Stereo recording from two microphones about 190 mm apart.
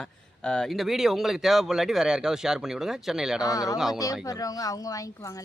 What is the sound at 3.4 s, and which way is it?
A woman's voice, 20° left (ahead or behind).